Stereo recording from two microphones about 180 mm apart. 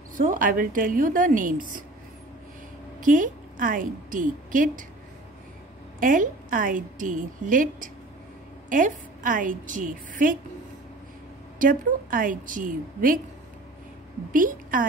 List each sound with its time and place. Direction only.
0.1 s a woman's voice: 45° right (ahead or behind)
3.0 s a woman's voice: 50° right (ahead or behind)
5.9 s a woman's voice: 50° right (ahead or behind)
11.5 s a woman's voice: 50° right (ahead or behind)
14.3 s a woman's voice: 50° right (ahead or behind)